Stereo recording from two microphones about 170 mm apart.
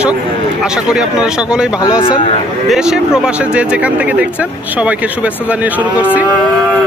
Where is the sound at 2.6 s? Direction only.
5° right (ahead or behind).